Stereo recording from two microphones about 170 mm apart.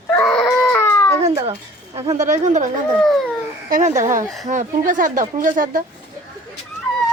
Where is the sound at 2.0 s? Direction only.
20° right (ahead or behind).